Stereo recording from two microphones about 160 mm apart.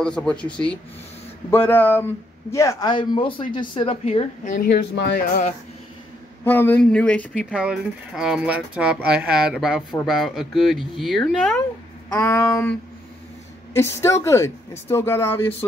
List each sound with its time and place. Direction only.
0.0 s speech: 5° left (ahead or behind)
1.5 s a man's voice: 15° left (ahead or behind); by 4.6 s 40° left (ahead or behind)
4.6 s speech: 80° left
6.4 s speech: 10° left (ahead or behind)
7.5 s speech: 5° right (ahead or behind)
12.1 s speech: 15° left (ahead or behind)
13.7 s speech: 15° left (ahead or behind)